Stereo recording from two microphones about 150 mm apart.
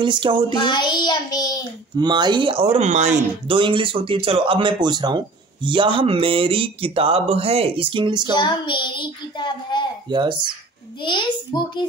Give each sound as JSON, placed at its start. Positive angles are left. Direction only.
{"t": 0.0, "sound": "speech", "side_deg": -35}
{"t": 0.6, "sound": "child singing", "side_deg": 30}
{"t": 2.0, "sound": "speech", "side_deg": -30}
{"t": 3.4, "sound": "speech", "side_deg": -35}
{"t": 8.4, "sound": "a child's voice", "side_deg": 30}
{"t": 10.0, "sound": "speech", "side_deg": -30}
{"t": 11.0, "sound": "a child's voice", "side_deg": 30}